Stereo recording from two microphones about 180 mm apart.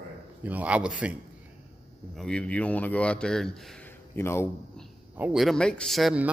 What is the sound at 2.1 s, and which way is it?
Speech, 5° left (ahead or behind).